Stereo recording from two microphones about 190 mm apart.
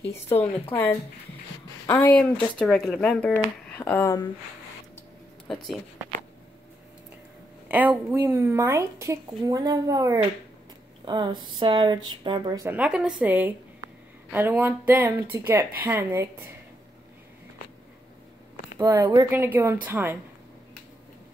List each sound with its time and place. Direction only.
0.1 s speech: 10° left (ahead or behind)
7.6 s a woman's voice: 10° right (ahead or behind)
12.6 s a woman's voice: 5° right (ahead or behind)
18.8 s a woman's voice: 15° right (ahead or behind)